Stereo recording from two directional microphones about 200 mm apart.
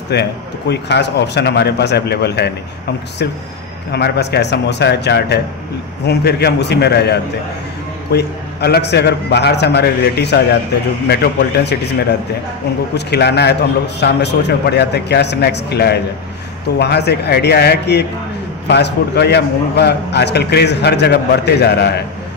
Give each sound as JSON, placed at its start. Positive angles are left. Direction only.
{"t": 0.1, "sound": "a man's voice", "side_deg": 55}
{"t": 3.9, "sound": "a man's voice", "side_deg": 55}